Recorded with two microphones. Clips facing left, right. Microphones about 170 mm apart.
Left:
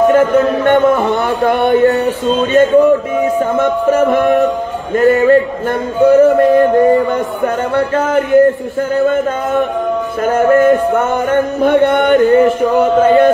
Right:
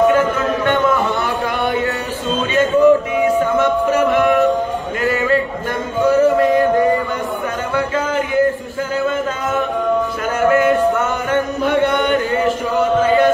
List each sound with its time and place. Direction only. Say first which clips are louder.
0.1 s a sound: left 6 dB; 55° left (ahead or behind)
3.5 s music: left 3 dB; 50° left (ahead or behind)
11.0 s music: left 5 dB; 55° left (ahead or behind)